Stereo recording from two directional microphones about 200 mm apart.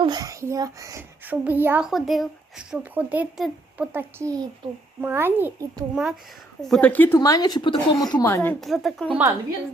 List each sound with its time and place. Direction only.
0.0 s a child's voice: 20° right (ahead or behind); by 8.5 s 15° left (ahead or behind)
8.6 s a woman's voice: centre (ahead or behind)